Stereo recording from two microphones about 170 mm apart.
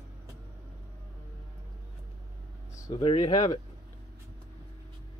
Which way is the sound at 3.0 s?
25° left (ahead or behind).